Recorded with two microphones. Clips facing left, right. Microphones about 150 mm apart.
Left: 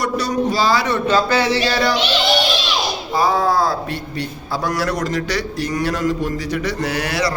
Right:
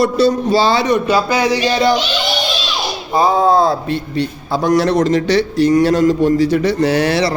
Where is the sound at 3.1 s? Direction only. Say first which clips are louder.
Right 5 dB; 25° right (ahead or behind).